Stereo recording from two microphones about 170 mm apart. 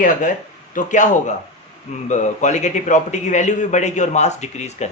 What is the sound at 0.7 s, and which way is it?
Speech, 50° left (ahead or behind).